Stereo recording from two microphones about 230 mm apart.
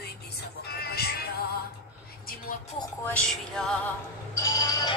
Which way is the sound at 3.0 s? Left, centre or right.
Centre.